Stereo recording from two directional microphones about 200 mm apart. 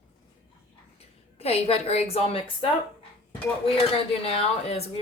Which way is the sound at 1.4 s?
30° left (ahead or behind).